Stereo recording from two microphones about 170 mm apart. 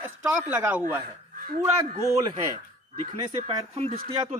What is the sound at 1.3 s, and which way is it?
Crow, 60° right (ahead or behind).